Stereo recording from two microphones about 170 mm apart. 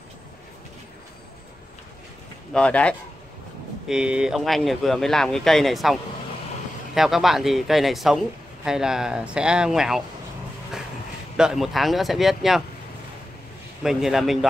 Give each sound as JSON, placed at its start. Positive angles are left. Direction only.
{"t": 2.5, "sound": "speech", "side_deg": 5}
{"t": 3.8, "sound": "speech", "side_deg": -5}
{"t": 11.3, "sound": "speech", "side_deg": -5}
{"t": 13.8, "sound": "speech", "side_deg": 0}